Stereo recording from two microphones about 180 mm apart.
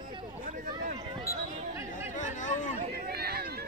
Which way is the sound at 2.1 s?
45° left (ahead or behind).